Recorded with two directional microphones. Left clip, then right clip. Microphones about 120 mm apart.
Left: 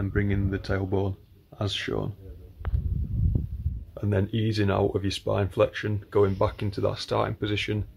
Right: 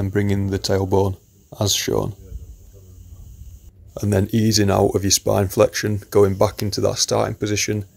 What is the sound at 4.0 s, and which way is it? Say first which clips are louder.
Speech: right 8 dB; 40° right (ahead or behind).